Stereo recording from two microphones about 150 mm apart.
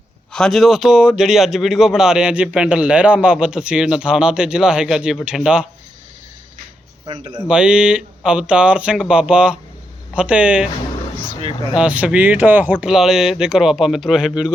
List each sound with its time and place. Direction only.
0.3 s speech: 5° left (ahead or behind)
7.1 s speech: 30° right (ahead or behind)
7.4 s speech: 5° right (ahead or behind)
11.7 s speech: 10° right (ahead or behind)